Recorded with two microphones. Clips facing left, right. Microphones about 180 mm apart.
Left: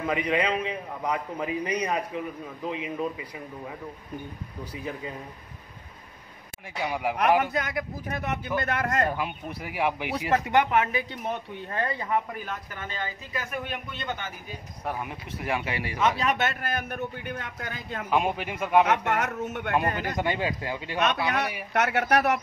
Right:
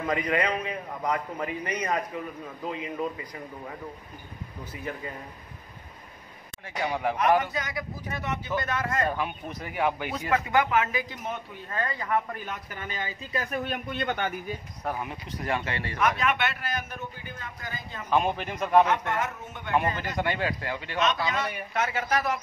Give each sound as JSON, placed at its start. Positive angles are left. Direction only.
{"t": 0.0, "sound": "speech", "side_deg": 10}
{"t": 6.8, "sound": "speech", "side_deg": 10}
{"t": 7.5, "sound": "a man's voice", "side_deg": 55}
{"t": 9.1, "sound": "speech", "side_deg": 10}
{"t": 10.9, "sound": "speech", "side_deg": 30}
{"t": 13.3, "sound": "speech", "side_deg": -35}
{"t": 13.9, "sound": "a man's voice", "side_deg": -55}
{"t": 14.9, "sound": "speech", "side_deg": 5}
{"t": 16.0, "sound": "a man's voice", "side_deg": 30}
{"t": 18.1, "sound": "speech", "side_deg": 5}
{"t": 18.9, "sound": "a man's voice", "side_deg": 75}
{"t": 20.0, "sound": "speech", "side_deg": 15}
{"t": 21.0, "sound": "a man's voice", "side_deg": 65}